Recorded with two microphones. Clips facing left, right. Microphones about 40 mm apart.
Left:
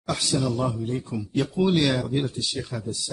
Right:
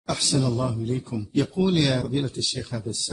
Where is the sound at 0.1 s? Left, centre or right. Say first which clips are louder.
Right 1 dB; centre.